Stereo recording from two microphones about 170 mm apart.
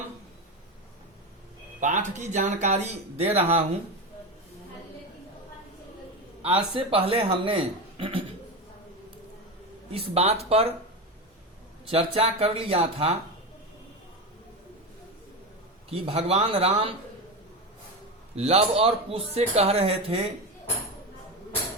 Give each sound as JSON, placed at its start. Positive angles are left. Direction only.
{"t": 1.8, "sound": "speech", "side_deg": -45}
{"t": 6.7, "sound": "speech", "side_deg": -35}
{"t": 9.9, "sound": "speech", "side_deg": -35}
{"t": 11.9, "sound": "speech", "side_deg": -35}
{"t": 15.9, "sound": "speech", "side_deg": -35}
{"t": 18.3, "sound": "speech", "side_deg": -35}